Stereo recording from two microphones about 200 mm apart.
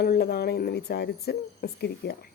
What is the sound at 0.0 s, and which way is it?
Speech, 50° left (ahead or behind).